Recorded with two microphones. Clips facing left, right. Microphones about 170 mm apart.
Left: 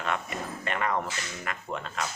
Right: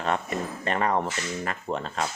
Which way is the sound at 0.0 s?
35° right (ahead or behind).